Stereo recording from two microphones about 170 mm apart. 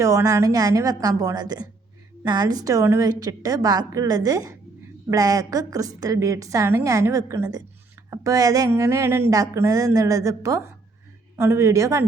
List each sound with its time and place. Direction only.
0.0 s a woman's voice: 20° right (ahead or behind)